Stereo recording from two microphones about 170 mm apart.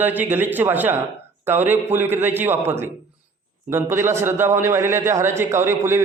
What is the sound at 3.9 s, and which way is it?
A man's voice, 15° right (ahead or behind).